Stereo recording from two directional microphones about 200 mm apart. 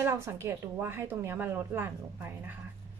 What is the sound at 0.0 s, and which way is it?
A woman's voice, 15° right (ahead or behind).